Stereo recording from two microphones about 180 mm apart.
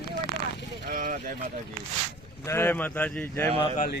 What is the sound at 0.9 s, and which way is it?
Speech, 50° right (ahead or behind).